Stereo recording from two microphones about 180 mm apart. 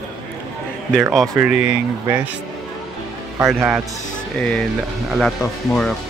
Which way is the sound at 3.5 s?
5° right (ahead or behind).